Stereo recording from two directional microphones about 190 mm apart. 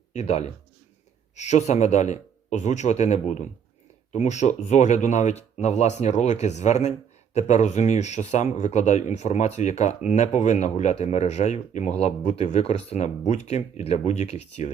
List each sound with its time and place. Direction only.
0.1 s a man's voice: 35° left (ahead or behind)